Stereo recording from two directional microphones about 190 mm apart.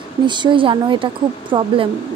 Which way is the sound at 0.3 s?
25° right (ahead or behind).